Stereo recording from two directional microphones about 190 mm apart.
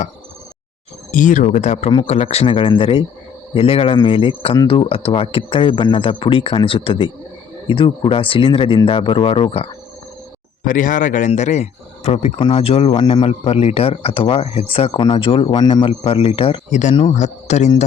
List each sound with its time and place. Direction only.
1.1 s a man's voice: 45° left (ahead or behind)
10.6 s a man's voice: 45° left (ahead or behind)